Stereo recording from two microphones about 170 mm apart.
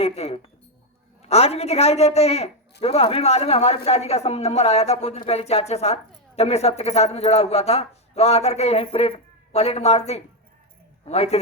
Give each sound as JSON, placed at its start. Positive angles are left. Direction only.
{"t": 0.0, "sound": "speech", "side_deg": 35}